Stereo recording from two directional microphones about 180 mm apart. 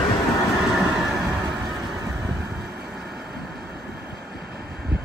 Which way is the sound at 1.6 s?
25° right (ahead or behind).